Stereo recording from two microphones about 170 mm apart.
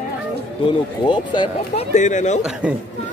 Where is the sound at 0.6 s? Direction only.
25° left (ahead or behind).